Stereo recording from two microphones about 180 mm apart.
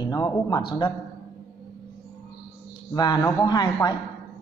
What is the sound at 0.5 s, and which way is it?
Speech, 25° left (ahead or behind).